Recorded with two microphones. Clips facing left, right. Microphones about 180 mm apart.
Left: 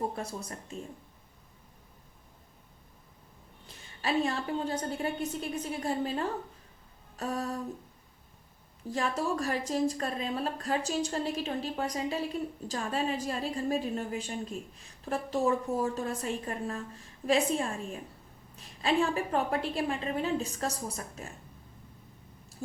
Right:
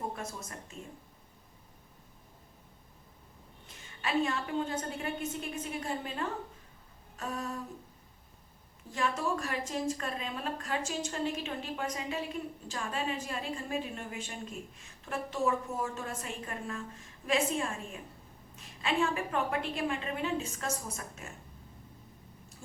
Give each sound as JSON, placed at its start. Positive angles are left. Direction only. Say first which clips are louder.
{"t": 0.2, "sound": "a woman's voice", "louder": "left 4 dB", "side_deg": 35}
{"t": 4.0, "sound": "a woman's voice", "louder": "left 2 dB", "side_deg": 35}
{"t": 8.9, "sound": "a woman's voice", "louder": "left 2 dB", "side_deg": 35}